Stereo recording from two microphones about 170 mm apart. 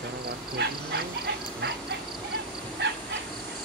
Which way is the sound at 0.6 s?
90° right.